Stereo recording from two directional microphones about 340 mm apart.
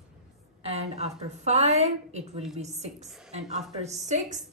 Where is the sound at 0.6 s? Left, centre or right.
Centre.